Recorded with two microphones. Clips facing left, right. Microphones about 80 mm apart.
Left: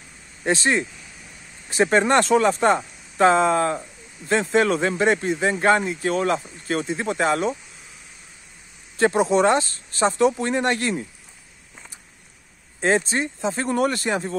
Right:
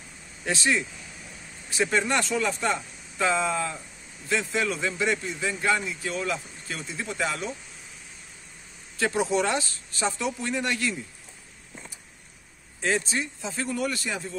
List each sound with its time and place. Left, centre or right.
0.5 s speech: left
8.9 s speech: left
12.8 s speech: left